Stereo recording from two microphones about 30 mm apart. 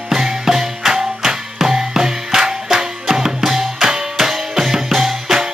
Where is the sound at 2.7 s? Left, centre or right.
Centre.